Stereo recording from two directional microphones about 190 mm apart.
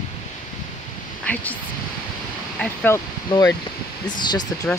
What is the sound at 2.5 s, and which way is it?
Speech, 10° left (ahead or behind).